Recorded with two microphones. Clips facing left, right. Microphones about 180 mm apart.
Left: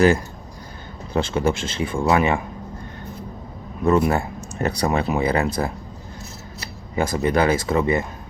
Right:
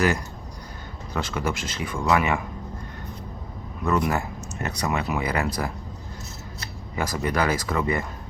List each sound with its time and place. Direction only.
1.1 s speech: 30° left (ahead or behind)
3.8 s speech: 25° left (ahead or behind)
6.9 s speech: 25° left (ahead or behind)